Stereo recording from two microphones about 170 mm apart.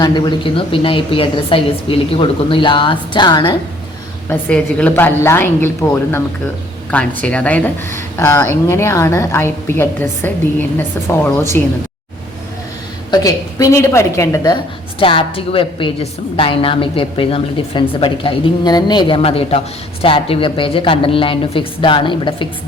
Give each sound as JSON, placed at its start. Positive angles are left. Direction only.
{"t": 0.0, "sound": "a woman's voice", "side_deg": 25}
{"t": 4.3, "sound": "speech", "side_deg": 5}
{"t": 13.1, "sound": "a woman's voice", "side_deg": 20}